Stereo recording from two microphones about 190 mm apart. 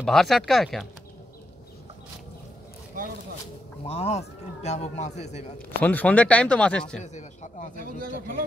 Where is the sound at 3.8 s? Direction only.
30° left (ahead or behind).